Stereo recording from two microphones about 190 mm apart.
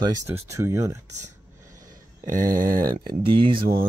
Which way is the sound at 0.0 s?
20° right (ahead or behind).